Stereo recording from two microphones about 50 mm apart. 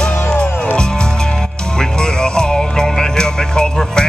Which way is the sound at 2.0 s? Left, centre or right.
Centre.